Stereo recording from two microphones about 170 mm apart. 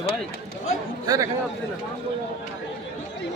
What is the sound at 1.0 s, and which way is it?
Speech, 20° right (ahead or behind).